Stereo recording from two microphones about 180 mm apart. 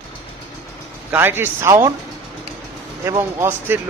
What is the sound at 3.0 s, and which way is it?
Speech, 15° right (ahead or behind).